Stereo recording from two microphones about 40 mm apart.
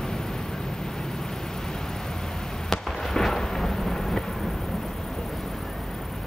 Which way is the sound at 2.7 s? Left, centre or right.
Centre.